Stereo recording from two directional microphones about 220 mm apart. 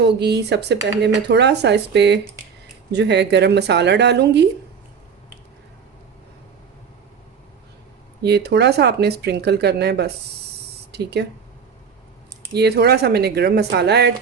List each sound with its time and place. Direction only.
0.0 s speech: 50° right (ahead or behind)
8.2 s speech: 50° right (ahead or behind)
12.5 s speech: 50° right (ahead or behind)